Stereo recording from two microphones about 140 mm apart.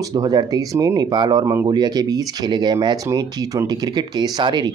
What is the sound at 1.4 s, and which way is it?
Speech, 15° right (ahead or behind).